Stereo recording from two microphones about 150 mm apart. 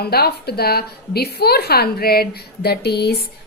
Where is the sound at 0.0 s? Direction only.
90° left.